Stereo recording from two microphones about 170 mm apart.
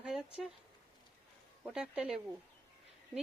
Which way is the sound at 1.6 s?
5° right (ahead or behind).